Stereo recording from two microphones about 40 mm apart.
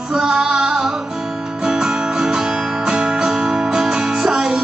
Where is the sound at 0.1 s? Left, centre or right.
Centre.